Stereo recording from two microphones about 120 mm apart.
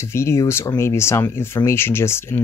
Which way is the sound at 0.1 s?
20° left (ahead or behind).